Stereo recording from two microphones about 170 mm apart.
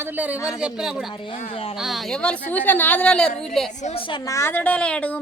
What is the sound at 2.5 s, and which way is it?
Speech, 10° left (ahead or behind).